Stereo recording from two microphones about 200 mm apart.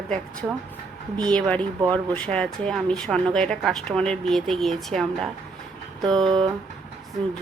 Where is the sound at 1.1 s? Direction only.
5° left (ahead or behind).